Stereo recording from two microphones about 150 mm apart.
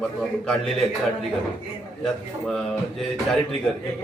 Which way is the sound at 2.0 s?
5° left (ahead or behind).